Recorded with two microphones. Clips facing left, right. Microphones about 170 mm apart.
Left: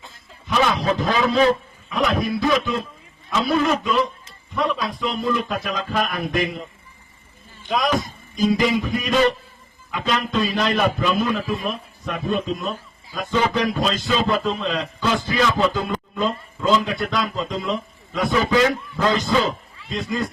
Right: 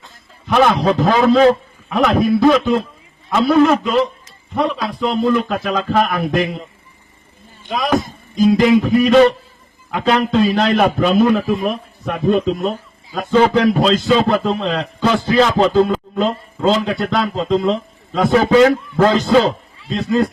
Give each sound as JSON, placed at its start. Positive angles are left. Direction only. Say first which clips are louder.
{"t": 0.4, "sound": "a man's voice", "louder": "right 6 dB", "side_deg": -55}
{"t": 7.9, "sound": "a man's voice", "louder": "right 5 dB", "side_deg": -50}
{"t": 13.1, "sound": "a man's voice", "louder": "right 8 dB", "side_deg": -60}
{"t": 15.8, "sound": "a man's voice", "louder": "right 9 dB", "side_deg": -65}